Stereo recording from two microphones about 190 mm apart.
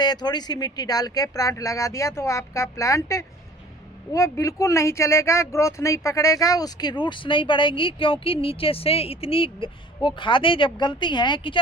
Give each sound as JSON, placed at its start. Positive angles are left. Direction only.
{"t": 0.0, "sound": "speech", "side_deg": 20}